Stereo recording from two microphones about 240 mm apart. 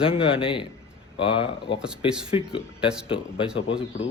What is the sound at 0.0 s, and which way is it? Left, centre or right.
Speech, left.